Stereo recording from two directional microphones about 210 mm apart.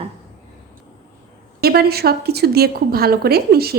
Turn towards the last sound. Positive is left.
turn(degrees=-50)  # may be behind; listen again after turning